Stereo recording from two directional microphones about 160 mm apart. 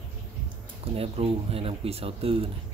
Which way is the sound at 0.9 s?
35° right (ahead or behind).